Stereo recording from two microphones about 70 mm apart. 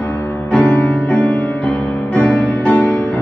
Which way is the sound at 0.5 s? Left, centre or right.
Centre.